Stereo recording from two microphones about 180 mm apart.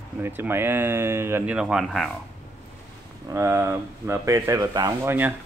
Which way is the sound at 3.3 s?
15° right (ahead or behind).